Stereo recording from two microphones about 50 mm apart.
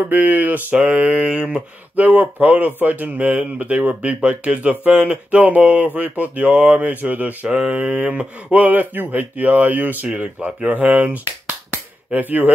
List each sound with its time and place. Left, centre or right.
0.1 s speech: right
0.7 s speech: right
7.4 s speech: centre
12.1 s speech: right